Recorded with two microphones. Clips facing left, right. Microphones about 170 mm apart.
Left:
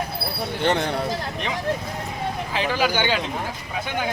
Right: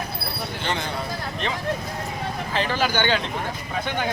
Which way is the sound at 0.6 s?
60° left (ahead or behind).